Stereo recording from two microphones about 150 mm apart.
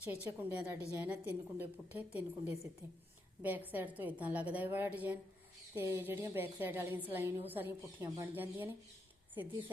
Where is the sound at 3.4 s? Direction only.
10° right (ahead or behind).